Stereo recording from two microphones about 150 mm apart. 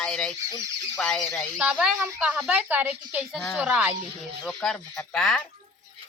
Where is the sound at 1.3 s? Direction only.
5° right (ahead or behind).